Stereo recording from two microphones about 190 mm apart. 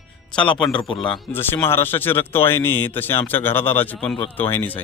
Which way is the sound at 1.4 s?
10° left (ahead or behind).